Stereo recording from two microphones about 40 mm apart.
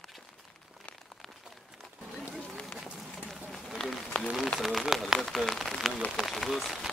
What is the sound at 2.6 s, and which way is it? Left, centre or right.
Run, centre.